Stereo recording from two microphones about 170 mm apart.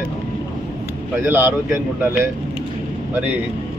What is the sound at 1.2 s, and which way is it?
Speech, 10° right (ahead or behind).